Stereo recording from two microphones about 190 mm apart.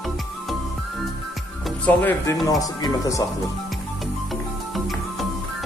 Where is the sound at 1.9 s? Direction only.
10° left (ahead or behind).